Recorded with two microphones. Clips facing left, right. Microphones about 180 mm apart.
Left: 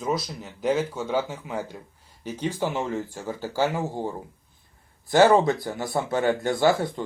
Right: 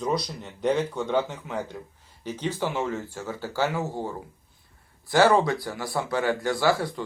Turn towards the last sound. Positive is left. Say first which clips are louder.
# left 2 dB
turn(degrees=20)  # may be behind; listen again after turning